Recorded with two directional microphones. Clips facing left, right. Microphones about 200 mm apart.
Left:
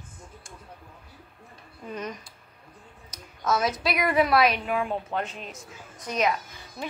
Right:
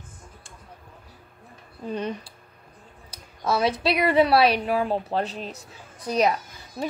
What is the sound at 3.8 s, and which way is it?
A woman's voice, 30° right (ahead or behind).